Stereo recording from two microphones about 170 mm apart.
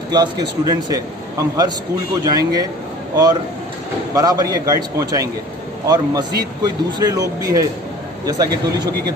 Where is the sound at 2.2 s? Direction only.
25° right (ahead or behind).